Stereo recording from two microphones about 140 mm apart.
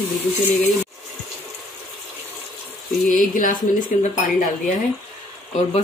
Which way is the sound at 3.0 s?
70° left (ahead or behind).